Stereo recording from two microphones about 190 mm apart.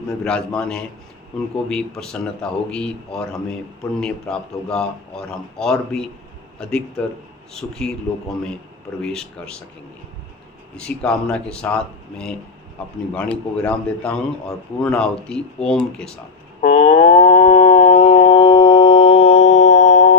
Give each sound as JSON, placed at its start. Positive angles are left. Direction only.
{"t": 0.3, "sound": "a man's voice", "side_deg": 5}
{"t": 9.0, "sound": "a man's voice", "side_deg": 5}
{"t": 10.8, "sound": "a man's voice", "side_deg": 5}
{"t": 16.6, "sound": "a sound", "side_deg": 35}